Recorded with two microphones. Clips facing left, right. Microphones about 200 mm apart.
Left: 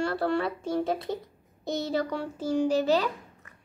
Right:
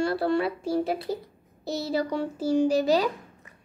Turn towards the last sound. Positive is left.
turn(degrees=-10)  # may be behind; listen again after turning